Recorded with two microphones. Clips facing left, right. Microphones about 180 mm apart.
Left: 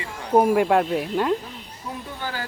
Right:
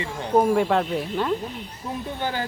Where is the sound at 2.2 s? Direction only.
25° right (ahead or behind).